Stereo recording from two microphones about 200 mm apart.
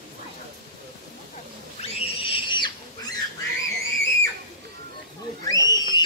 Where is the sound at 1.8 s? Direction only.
25° left (ahead or behind).